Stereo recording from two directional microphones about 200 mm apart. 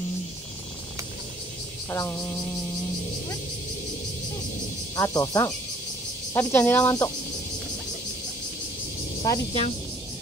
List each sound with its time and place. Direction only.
1.9 s speech: 15° left (ahead or behind)
4.9 s speech: 15° left (ahead or behind)
9.2 s speech: 20° left (ahead or behind)